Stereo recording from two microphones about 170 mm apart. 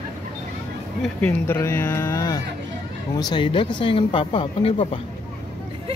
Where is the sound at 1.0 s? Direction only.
5° left (ahead or behind).